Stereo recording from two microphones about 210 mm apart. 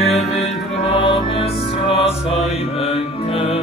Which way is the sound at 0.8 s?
25° left (ahead or behind).